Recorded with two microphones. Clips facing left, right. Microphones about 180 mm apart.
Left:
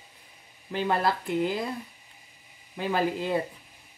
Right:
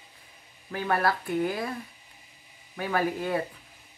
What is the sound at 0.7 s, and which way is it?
A woman's voice, 20° left (ahead or behind).